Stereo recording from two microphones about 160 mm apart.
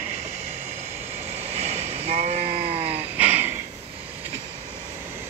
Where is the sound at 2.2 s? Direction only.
45° right (ahead or behind).